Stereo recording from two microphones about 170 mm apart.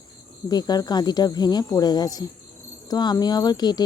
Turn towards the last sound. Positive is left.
turn(degrees=25)  # may be behind; listen again after turning